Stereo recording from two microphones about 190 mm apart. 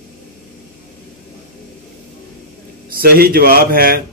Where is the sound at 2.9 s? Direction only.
50° right (ahead or behind).